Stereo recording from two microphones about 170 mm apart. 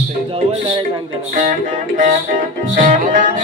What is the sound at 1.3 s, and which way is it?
Music, 50° right (ahead or behind).